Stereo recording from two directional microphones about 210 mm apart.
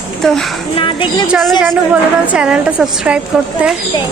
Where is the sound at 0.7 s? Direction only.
25° left (ahead or behind).